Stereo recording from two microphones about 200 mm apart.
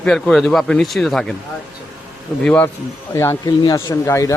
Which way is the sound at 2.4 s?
5° left (ahead or behind).